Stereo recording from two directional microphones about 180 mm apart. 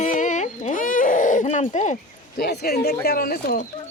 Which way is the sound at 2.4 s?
60° left (ahead or behind).